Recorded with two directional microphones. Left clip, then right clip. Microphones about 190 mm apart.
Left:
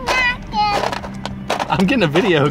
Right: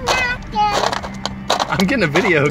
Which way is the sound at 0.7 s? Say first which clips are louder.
Right 1 dB; 5° left (ahead or behind).